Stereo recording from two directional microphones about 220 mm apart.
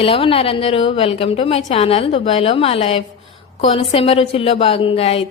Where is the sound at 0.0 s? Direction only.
25° left (ahead or behind).